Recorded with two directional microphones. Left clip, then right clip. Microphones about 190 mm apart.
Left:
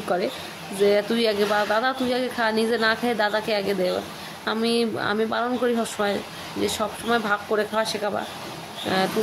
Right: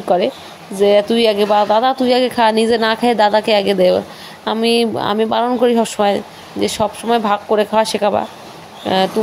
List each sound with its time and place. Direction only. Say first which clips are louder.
0.8 s speech: right 9 dB; 25° right (ahead or behind)